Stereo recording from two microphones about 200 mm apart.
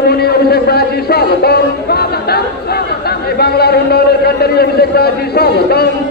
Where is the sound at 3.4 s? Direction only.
55° left (ahead or behind).